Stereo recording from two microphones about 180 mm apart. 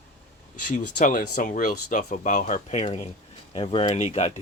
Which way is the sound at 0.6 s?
45° left (ahead or behind).